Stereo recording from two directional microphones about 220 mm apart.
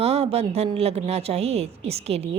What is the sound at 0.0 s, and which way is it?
A woman's voice, 30° right (ahead or behind).